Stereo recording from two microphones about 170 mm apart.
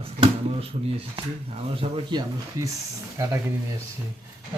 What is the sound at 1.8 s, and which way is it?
Speech, 30° right (ahead or behind).